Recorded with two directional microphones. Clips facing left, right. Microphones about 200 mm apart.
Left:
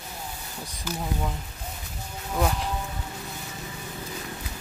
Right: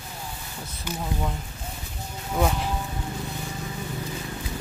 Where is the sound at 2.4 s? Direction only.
Centre (ahead or behind).